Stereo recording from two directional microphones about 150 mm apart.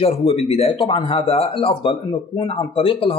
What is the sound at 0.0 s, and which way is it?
Speech, 40° left (ahead or behind).